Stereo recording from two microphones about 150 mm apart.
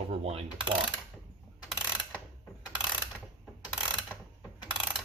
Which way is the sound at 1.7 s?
5° right (ahead or behind).